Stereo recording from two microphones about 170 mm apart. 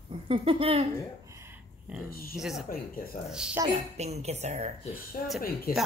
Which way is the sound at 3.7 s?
40° right (ahead or behind).